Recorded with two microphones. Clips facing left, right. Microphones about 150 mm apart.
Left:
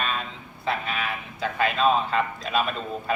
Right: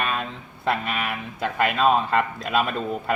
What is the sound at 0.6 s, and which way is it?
A man's voice, 65° right (ahead or behind).